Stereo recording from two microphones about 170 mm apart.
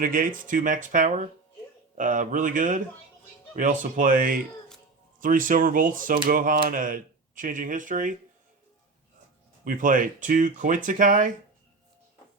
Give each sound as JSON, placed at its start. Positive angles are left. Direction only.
{"t": 0.0, "sound": "speech", "side_deg": -55}
{"t": 9.6, "sound": "speech", "side_deg": -50}